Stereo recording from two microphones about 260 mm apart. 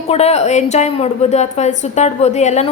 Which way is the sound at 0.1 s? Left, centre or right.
Left.